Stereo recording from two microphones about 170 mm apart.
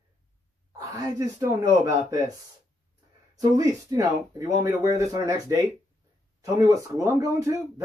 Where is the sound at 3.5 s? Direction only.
20° right (ahead or behind).